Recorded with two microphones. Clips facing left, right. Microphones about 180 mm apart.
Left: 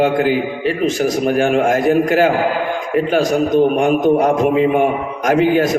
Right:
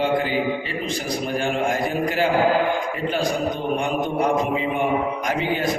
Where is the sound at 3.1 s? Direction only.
45° left (ahead or behind).